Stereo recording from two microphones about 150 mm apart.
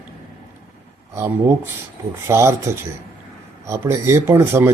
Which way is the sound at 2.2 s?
20° right (ahead or behind).